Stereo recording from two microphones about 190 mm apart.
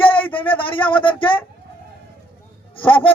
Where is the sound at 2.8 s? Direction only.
10° left (ahead or behind).